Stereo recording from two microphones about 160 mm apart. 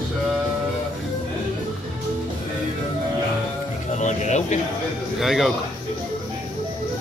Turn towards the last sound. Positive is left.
turn(degrees=0)  # may be behind; listen again after turning